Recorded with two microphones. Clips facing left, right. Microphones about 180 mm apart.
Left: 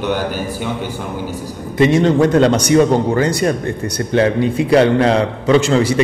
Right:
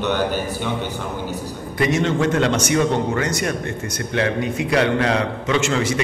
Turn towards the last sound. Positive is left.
turn(degrees=35)  # may be behind; listen again after turning